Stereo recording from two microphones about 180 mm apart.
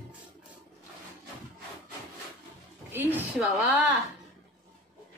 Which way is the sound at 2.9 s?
10° right (ahead or behind).